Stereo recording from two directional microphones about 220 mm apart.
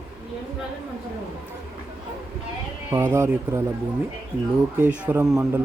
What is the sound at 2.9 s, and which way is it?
Speech, 10° right (ahead or behind).